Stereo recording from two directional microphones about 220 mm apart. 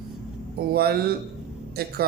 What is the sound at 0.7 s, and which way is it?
Speech, 45° right (ahead or behind).